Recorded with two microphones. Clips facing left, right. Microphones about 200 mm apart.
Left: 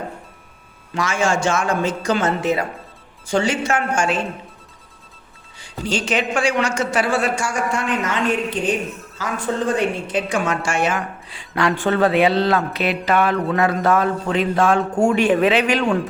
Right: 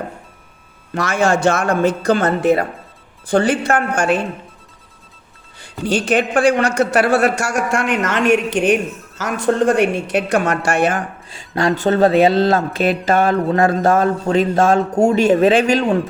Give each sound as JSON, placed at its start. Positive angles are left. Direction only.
{"t": 0.9, "sound": "a man's voice", "side_deg": -60}
{"t": 5.5, "sound": "a man's voice", "side_deg": -60}